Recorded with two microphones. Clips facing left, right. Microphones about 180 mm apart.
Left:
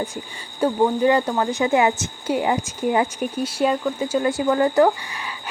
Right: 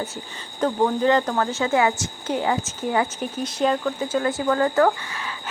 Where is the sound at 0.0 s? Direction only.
10° left (ahead or behind).